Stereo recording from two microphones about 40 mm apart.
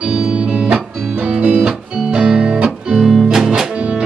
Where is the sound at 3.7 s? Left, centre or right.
Right.